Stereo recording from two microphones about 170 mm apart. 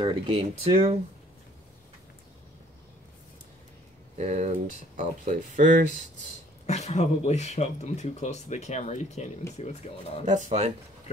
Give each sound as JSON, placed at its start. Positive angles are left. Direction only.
{"t": 0.0, "sound": "speech", "side_deg": -30}
{"t": 4.2, "sound": "speech", "side_deg": -45}
{"t": 6.6, "sound": "speech", "side_deg": 40}
{"t": 10.2, "sound": "speech", "side_deg": -45}